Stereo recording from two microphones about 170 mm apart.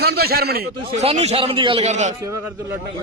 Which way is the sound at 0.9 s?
40° right (ahead or behind).